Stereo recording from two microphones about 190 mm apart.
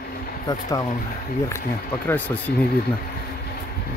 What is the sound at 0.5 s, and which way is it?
Speech, 20° left (ahead or behind).